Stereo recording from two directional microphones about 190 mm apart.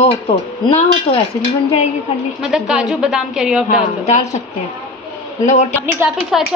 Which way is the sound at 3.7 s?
40° left (ahead or behind).